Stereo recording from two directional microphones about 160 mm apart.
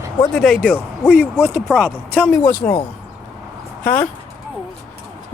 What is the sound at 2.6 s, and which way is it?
Speech, 20° left (ahead or behind).